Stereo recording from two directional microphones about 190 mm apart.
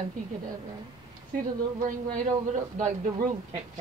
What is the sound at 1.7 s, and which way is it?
Speech, 45° right (ahead or behind).